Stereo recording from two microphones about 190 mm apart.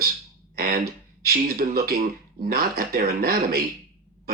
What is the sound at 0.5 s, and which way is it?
Speech, 55° right (ahead or behind).